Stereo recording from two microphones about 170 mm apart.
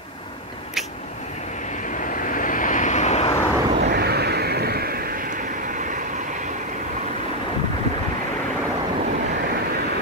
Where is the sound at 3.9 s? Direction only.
70° right (ahead or behind).